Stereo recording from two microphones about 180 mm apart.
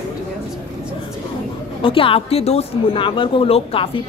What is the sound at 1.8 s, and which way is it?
Speech, 30° left (ahead or behind).